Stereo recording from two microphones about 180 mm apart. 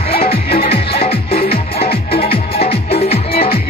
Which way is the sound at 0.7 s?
30° left (ahead or behind).